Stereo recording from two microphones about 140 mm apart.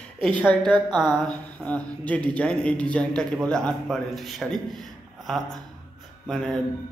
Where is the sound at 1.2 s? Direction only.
10° left (ahead or behind).